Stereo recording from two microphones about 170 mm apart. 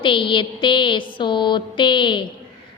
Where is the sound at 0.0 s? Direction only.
30° left (ahead or behind).